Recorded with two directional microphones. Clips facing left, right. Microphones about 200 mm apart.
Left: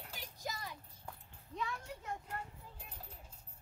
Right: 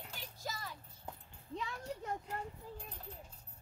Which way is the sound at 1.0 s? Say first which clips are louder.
Right 4 dB; 30° right (ahead or behind).